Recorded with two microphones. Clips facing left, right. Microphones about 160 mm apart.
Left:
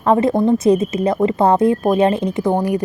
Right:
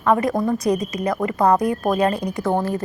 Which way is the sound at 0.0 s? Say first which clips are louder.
Left 4 dB; 30° left (ahead or behind).